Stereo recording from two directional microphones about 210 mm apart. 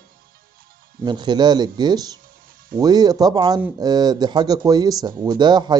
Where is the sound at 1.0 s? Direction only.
20° right (ahead or behind).